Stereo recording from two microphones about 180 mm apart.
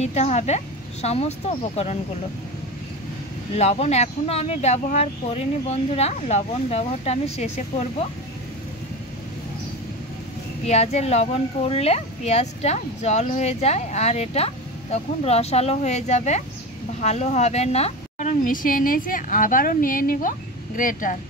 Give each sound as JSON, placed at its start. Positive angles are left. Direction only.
{"t": 0.0, "sound": "speech", "side_deg": 40}
{"t": 3.5, "sound": "speech", "side_deg": 35}
{"t": 10.6, "sound": "speech", "side_deg": 35}